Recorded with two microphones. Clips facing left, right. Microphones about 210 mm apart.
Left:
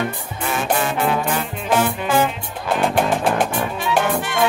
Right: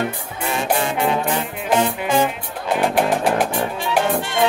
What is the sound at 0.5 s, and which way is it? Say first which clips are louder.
Music: even; 25° right (ahead or behind).